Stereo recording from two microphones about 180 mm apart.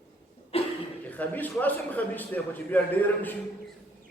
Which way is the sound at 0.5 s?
35° left (ahead or behind).